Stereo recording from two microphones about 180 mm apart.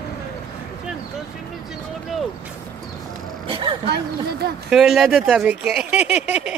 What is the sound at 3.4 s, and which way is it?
Vehicle, 30° right (ahead or behind).